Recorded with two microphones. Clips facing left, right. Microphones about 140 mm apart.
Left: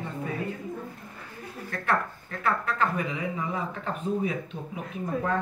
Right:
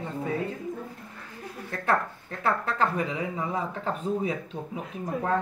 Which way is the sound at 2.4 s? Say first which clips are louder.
Right 1 dB; 30° right (ahead or behind).